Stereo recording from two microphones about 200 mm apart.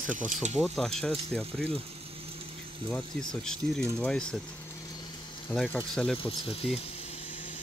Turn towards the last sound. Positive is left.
turn(degrees=30)  # may be behind; listen again after turning